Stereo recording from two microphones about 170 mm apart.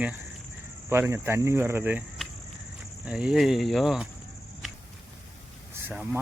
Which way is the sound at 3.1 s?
5° right (ahead or behind).